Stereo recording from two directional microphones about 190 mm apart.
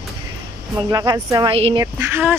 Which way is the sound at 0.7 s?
20° right (ahead or behind).